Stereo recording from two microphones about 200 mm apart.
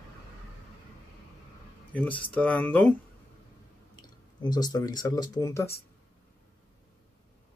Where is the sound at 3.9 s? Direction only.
20° left (ahead or behind).